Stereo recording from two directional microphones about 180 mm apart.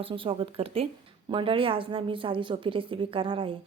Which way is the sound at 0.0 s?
30° right (ahead or behind).